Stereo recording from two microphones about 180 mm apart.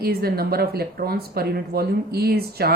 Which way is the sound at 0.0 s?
55° right (ahead or behind).